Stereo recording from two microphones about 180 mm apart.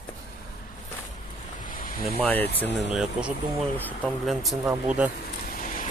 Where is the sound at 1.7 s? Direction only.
50° left (ahead or behind).